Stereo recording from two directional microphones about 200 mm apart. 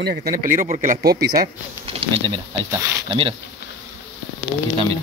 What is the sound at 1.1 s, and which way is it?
Speech, 50° right (ahead or behind).